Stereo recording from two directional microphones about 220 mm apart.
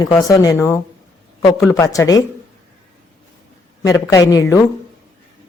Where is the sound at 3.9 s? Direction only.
15° left (ahead or behind).